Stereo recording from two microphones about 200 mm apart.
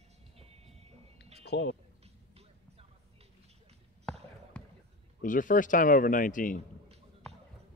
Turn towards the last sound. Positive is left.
turn(degrees=40)  # may be behind; listen again after turning